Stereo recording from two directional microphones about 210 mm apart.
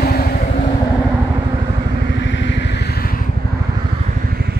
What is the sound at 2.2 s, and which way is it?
Vehicle, 60° left (ahead or behind).